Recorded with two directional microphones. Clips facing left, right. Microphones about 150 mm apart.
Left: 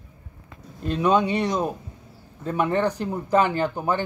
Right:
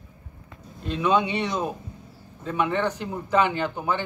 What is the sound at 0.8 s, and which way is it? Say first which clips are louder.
Speech: left 2 dB; 45° left (ahead or behind).